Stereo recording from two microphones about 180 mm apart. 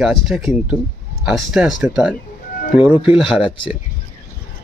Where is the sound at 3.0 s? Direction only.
30° left (ahead or behind).